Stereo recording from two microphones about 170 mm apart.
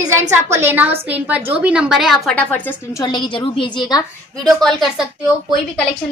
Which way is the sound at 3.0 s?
25° left (ahead or behind).